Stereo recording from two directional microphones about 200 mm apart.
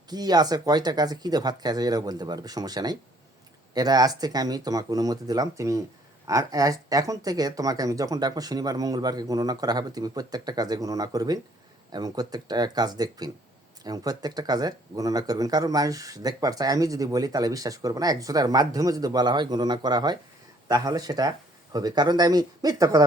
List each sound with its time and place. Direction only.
0.1 s speech: 20° right (ahead or behind)